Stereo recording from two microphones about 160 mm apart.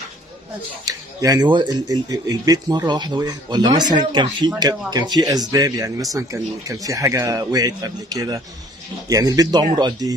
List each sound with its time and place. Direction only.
0.8 s speech: 20° right (ahead or behind)